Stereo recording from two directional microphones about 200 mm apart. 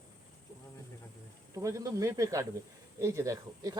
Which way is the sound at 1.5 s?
15° right (ahead or behind).